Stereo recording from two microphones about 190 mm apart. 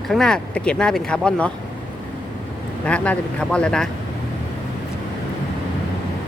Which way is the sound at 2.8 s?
5° left (ahead or behind).